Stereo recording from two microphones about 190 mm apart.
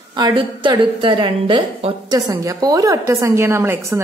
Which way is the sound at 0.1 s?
25° right (ahead or behind).